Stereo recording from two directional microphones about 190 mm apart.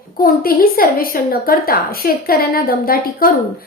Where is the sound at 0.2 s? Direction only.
50° left (ahead or behind).